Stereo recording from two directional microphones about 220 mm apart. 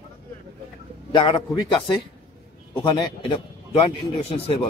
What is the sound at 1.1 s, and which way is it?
Speech, 20° left (ahead or behind).